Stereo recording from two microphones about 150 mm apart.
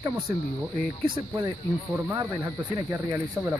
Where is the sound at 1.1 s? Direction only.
25° right (ahead or behind).